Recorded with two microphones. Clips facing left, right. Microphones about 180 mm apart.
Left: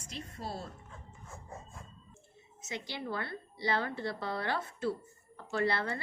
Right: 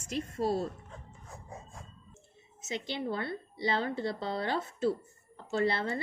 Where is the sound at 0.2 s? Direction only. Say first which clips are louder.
Right 11 dB; 40° right (ahead or behind).